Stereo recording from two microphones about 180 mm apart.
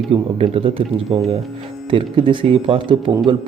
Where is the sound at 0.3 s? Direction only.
30° right (ahead or behind).